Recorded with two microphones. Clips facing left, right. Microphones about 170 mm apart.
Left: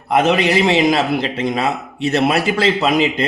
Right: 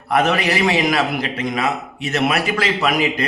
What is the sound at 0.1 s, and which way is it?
A man's voice, 20° left (ahead or behind).